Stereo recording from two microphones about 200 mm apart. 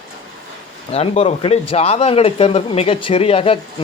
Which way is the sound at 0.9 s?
30° left (ahead or behind).